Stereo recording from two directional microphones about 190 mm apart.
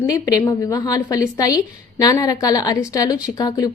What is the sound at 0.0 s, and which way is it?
A woman's voice, 20° left (ahead or behind).